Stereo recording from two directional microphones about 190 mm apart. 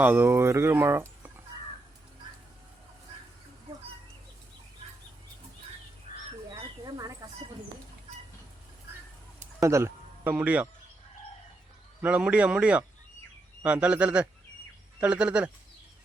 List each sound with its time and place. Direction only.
0.0 s speech: 10° right (ahead or behind)
6.1 s crow: 45° left (ahead or behind)
6.6 s a sound: 20° right (ahead or behind)
9.6 s speech: 15° right (ahead or behind)
12.0 s speech: 5° right (ahead or behind)